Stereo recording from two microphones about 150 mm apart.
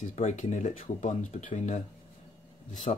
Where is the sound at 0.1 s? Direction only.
50° left (ahead or behind).